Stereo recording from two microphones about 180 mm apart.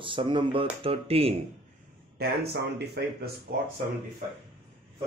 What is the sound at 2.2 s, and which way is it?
Speech, 65° right (ahead or behind).